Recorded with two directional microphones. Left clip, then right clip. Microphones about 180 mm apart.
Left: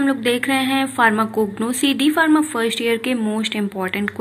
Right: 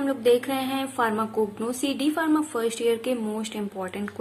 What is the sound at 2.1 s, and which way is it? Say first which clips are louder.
Speech: left 8 dB; 15° left (ahead or behind).